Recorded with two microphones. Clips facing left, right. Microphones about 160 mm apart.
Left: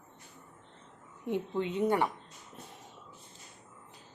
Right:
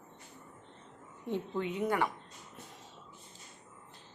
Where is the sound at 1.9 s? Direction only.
30° left (ahead or behind).